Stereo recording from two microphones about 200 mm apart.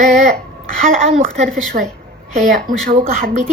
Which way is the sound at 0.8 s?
35° right (ahead or behind).